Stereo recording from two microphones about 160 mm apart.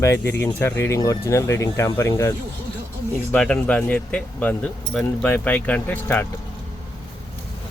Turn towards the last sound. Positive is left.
turn(degrees=10)  # may be behind; listen again after turning